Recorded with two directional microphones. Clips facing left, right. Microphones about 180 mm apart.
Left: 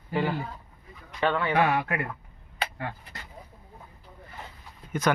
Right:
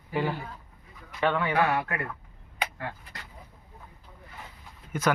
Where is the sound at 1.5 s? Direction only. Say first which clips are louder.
Left 2 dB; 20° left (ahead or behind).